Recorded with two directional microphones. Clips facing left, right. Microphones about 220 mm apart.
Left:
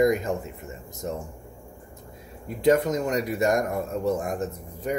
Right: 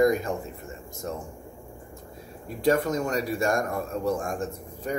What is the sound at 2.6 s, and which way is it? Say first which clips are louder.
Speech: left 3 dB; 20° left (ahead or behind).